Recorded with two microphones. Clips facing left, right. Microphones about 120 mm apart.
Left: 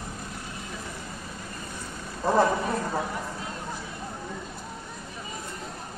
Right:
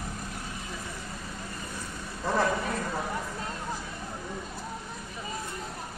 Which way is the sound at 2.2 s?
25° left (ahead or behind).